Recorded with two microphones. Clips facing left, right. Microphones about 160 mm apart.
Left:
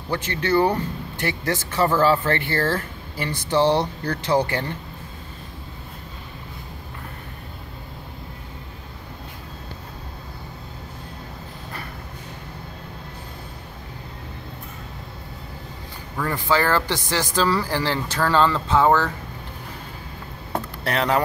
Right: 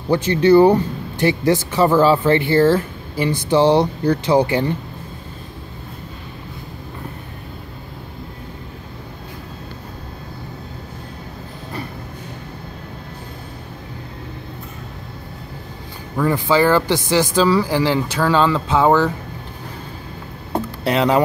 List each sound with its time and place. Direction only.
0.1 s speech: 20° right (ahead or behind)
16.2 s speech: 15° right (ahead or behind)
20.5 s vehicle: 20° right (ahead or behind)